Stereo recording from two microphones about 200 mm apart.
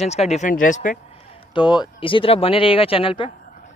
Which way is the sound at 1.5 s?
20° left (ahead or behind).